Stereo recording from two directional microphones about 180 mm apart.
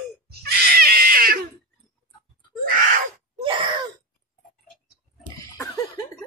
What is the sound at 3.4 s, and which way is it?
Wail, 30° right (ahead or behind).